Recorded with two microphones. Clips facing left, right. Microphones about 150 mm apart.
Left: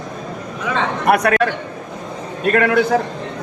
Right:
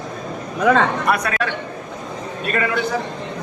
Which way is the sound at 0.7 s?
55° right (ahead or behind).